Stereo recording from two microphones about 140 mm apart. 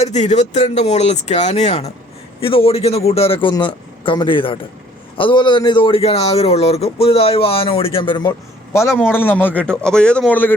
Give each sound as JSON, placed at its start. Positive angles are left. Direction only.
{"t": 0.0, "sound": "a man's voice", "side_deg": 55}